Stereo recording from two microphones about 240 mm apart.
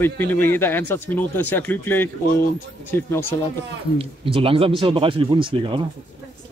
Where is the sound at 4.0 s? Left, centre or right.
Right.